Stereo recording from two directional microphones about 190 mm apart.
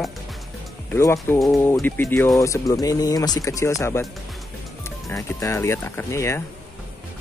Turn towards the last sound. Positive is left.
turn(degrees=15)  # may be behind; listen again after turning